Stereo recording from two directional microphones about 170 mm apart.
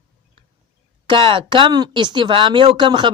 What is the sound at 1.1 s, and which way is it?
Speech, 30° right (ahead or behind).